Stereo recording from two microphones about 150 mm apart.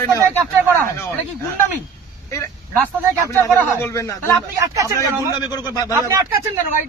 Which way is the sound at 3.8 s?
20° left (ahead or behind).